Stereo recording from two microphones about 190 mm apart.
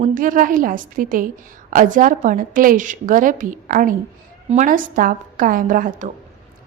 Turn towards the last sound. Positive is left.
turn(degrees=-45)  # may be behind; listen again after turning